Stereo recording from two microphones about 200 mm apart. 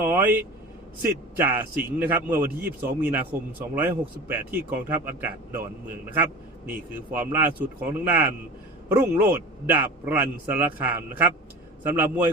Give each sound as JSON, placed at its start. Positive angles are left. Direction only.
{"t": 0.0, "sound": "vehicle", "side_deg": -10}
{"t": 1.4, "sound": "speech", "side_deg": -10}
{"t": 6.7, "sound": "speech", "side_deg": -10}